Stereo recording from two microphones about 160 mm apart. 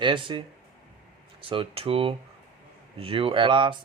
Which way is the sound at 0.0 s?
30° right (ahead or behind).